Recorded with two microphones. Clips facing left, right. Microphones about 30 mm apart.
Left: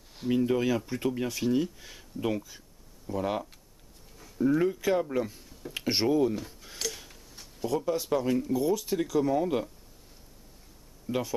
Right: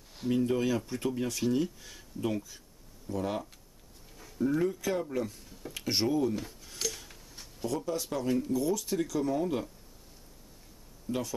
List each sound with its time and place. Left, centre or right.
0.1 s a sound: centre
0.4 s speech: centre
4.6 s speech: centre
6.6 s a sound: centre
7.6 s speech: centre
11.1 s speech: centre